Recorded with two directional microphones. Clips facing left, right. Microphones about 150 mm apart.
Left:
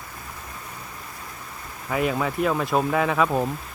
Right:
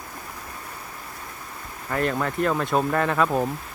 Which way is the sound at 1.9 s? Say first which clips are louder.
Left 1 dB; 5° left (ahead or behind).